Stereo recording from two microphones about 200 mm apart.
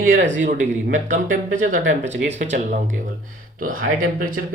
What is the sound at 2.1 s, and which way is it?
Speech, 60° right (ahead or behind).